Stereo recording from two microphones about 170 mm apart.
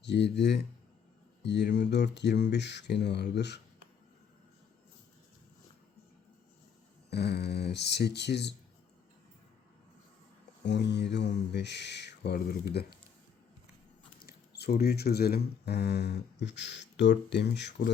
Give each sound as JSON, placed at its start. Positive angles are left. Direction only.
{"t": 0.0, "sound": "speech", "side_deg": 90}
{"t": 7.1, "sound": "speech", "side_deg": 75}
{"t": 10.7, "sound": "mantra", "side_deg": 90}
{"t": 14.2, "sound": "speech", "side_deg": 65}